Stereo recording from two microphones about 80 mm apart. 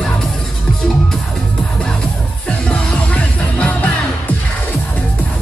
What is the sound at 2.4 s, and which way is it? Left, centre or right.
Music, centre.